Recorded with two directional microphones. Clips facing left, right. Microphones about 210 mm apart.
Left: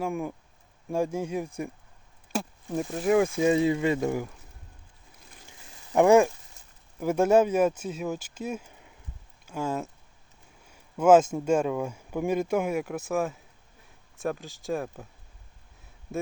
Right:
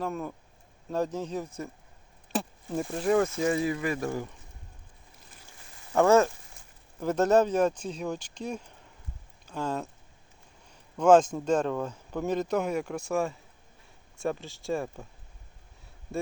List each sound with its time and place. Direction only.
0.0 s speech: 10° left (ahead or behind)
5.5 s a sound: 15° left (ahead or behind)
7.0 s speech: 10° left (ahead or behind)